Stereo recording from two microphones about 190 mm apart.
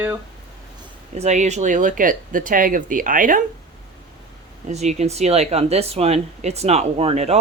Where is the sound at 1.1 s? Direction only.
35° right (ahead or behind).